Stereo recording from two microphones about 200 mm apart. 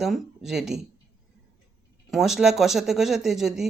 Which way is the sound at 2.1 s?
Centre (ahead or behind).